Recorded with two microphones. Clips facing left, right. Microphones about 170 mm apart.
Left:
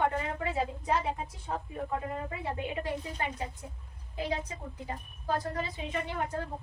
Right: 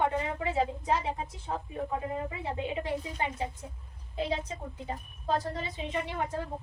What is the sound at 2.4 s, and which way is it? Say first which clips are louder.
A woman's voice: right 1 dB; 20° right (ahead or behind).